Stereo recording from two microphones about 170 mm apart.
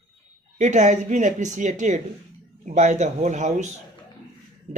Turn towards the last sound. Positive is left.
turn(degrees=-45)  # may be behind; listen again after turning